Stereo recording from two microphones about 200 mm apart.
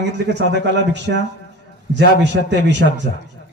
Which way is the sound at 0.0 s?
60° right (ahead or behind).